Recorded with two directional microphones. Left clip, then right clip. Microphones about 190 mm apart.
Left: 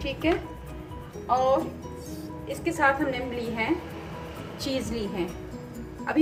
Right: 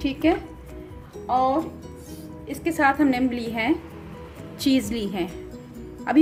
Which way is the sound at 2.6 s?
55° right (ahead or behind).